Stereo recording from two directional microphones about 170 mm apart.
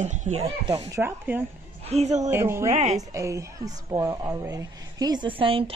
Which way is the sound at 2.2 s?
15° right (ahead or behind).